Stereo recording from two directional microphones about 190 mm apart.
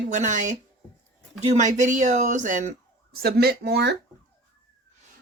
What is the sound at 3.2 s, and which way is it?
Speech, 55° right (ahead or behind).